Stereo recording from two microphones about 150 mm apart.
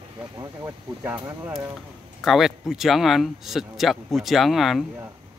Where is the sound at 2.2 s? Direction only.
Centre (ahead or behind).